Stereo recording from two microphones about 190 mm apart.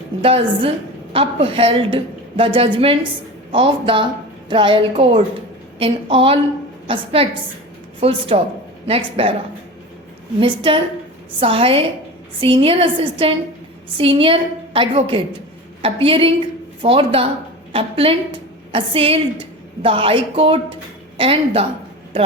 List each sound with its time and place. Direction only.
0.2 s a woman's voice: 30° right (ahead or behind)
10.4 s a woman's voice: 25° right (ahead or behind)